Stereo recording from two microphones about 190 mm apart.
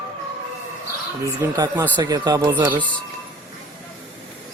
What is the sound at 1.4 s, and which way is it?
Speech, 15° right (ahead or behind).